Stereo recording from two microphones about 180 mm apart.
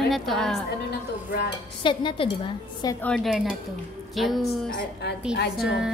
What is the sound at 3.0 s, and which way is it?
Speech, 5° left (ahead or behind).